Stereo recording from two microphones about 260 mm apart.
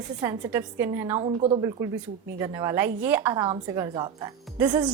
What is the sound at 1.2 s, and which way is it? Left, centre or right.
A woman's voice, right.